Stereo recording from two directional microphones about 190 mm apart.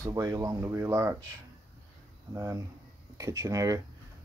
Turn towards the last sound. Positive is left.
turn(degrees=-15)  # may be behind; listen again after turning